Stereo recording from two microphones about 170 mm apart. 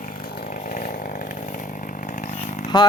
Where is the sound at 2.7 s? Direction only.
25° left (ahead or behind).